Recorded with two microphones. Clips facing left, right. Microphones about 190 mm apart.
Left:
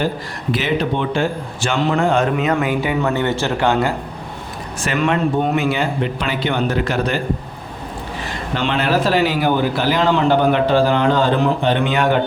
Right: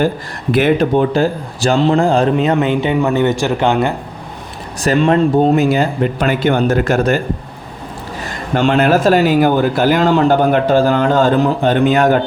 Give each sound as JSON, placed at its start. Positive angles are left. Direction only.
{"t": 0.5, "sound": "speech", "side_deg": -50}
{"t": 4.8, "sound": "a man's voice", "side_deg": -35}
{"t": 8.5, "sound": "a man's voice", "side_deg": -45}